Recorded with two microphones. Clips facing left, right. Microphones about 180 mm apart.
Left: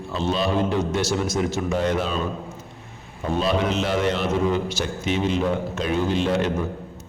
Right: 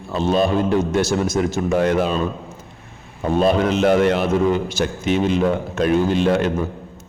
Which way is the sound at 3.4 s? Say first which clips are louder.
Right 6 dB; 50° right (ahead or behind).